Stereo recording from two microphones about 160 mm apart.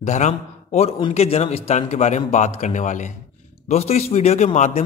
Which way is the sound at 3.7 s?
40° left (ahead or behind).